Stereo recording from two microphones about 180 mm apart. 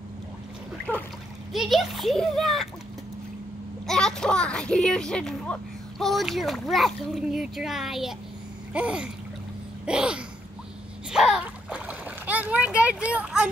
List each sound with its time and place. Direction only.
1.5 s a child's voice: centre (ahead or behind)
3.8 s a child's voice: 5° left (ahead or behind)
8.7 s a sound: 5° right (ahead or behind)
9.8 s a child's voice: 5° right (ahead or behind)
11.1 s splash: 5° right (ahead or behind)